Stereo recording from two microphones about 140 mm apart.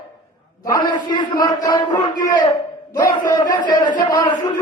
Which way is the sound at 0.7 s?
25° left (ahead or behind).